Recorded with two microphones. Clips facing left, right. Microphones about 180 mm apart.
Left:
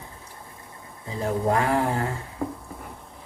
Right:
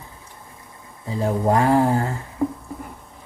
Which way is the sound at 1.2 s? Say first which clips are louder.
Right 4 dB; 35° right (ahead or behind).